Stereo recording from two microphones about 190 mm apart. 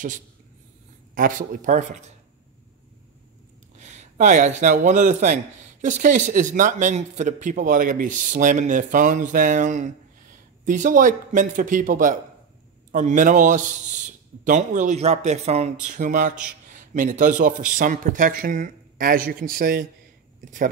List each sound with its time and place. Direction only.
1.1 s a man's voice: 45° right (ahead or behind)
3.7 s a man's voice: 40° right (ahead or behind)